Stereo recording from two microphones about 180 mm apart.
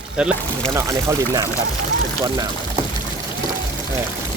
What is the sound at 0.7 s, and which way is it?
Speech, 15° right (ahead or behind).